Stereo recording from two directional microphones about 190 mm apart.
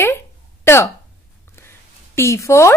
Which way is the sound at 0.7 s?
15° left (ahead or behind).